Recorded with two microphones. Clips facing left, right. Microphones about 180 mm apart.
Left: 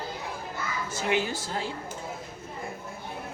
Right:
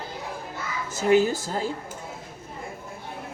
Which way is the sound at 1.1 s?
40° right (ahead or behind).